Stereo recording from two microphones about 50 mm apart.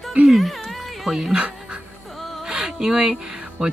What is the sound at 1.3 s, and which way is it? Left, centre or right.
Dog, centre.